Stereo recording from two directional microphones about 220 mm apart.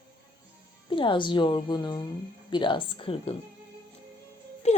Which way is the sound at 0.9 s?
20° left (ahead or behind).